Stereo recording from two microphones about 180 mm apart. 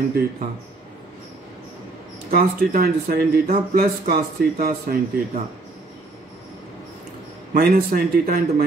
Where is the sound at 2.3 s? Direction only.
55° right (ahead or behind).